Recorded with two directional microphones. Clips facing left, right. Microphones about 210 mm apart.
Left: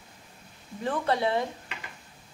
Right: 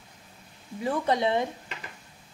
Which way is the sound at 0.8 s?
15° right (ahead or behind).